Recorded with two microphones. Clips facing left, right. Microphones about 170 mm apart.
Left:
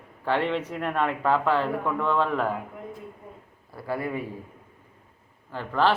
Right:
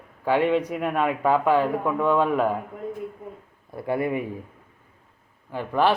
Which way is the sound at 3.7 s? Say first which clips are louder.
Right 5 dB; 20° right (ahead or behind).